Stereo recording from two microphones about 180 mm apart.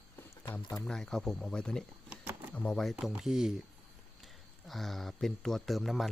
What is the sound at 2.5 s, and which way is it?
Speech, 5° left (ahead or behind).